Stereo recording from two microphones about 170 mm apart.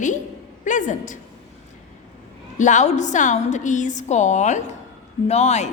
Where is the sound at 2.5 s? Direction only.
45° left (ahead or behind).